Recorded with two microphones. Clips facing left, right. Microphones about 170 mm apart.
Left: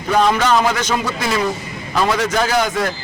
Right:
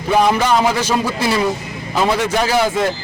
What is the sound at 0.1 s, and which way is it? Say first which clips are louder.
A man's voice: right 1 dB; 10° right (ahead or behind).